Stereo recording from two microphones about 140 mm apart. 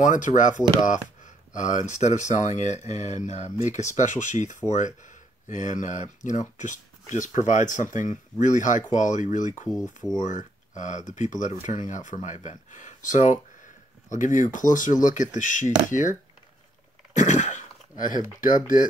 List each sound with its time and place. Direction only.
0.0 s speech: 65° left (ahead or behind)